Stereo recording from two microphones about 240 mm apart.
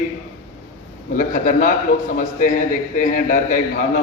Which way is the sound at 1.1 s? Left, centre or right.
Left.